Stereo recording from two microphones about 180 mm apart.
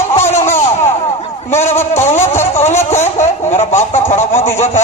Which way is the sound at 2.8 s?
40° left (ahead or behind).